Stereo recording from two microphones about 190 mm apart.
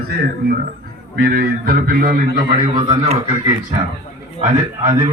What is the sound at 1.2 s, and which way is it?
Speech, 50° right (ahead or behind).